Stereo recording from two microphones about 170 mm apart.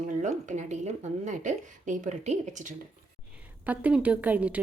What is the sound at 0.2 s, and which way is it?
A woman's voice, 45° right (ahead or behind).